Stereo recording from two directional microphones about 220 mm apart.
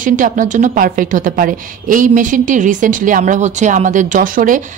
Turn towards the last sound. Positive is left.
turn(degrees=-40)  # may be behind; listen again after turning